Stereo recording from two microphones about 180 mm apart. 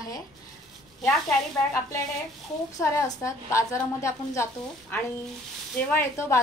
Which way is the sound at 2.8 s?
15° left (ahead or behind).